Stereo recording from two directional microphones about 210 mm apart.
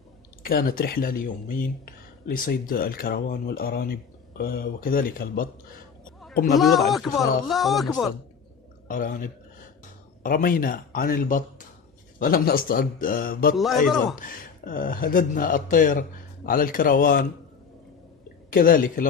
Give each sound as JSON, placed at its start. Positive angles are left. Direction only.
{"t": 0.4, "sound": "speech", "side_deg": 45}
{"t": 6.6, "sound": "speech", "side_deg": 0}
{"t": 8.8, "sound": "speech", "side_deg": 40}
{"t": 13.8, "sound": "speech", "side_deg": 0}
{"t": 14.1, "sound": "speech", "side_deg": 40}
{"t": 18.5, "sound": "speech", "side_deg": 40}